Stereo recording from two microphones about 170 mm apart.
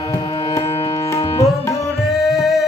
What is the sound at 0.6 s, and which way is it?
Music, 35° left (ahead or behind).